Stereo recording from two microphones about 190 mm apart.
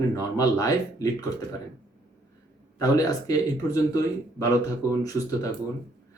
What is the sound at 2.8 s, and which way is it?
Speech, 20° left (ahead or behind).